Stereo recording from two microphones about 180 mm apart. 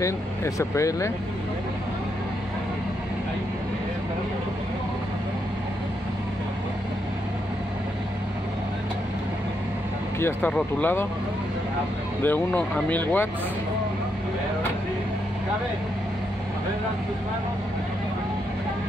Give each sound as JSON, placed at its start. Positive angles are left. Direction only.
{"t": 0.0, "sound": "speech", "side_deg": 15}
{"t": 10.2, "sound": "speech", "side_deg": 10}
{"t": 12.2, "sound": "speech", "side_deg": 10}